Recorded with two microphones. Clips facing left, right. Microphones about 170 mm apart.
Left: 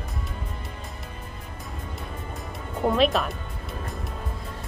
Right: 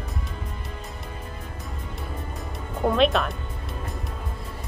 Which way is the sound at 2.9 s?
Centre (ahead or behind).